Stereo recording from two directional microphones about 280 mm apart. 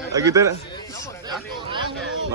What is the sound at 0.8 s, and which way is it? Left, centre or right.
Speech, centre.